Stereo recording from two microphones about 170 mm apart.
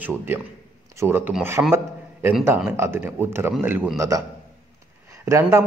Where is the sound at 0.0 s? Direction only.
10° right (ahead or behind).